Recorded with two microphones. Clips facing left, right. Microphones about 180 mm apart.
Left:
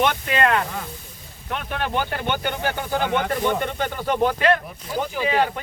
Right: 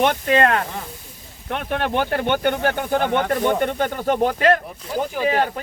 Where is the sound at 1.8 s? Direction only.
65° right (ahead or behind).